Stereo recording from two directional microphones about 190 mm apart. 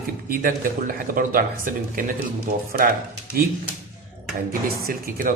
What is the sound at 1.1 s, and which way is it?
Speech, 50° right (ahead or behind).